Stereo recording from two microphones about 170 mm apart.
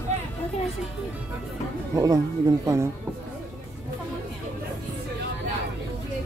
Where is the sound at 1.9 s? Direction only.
20° right (ahead or behind).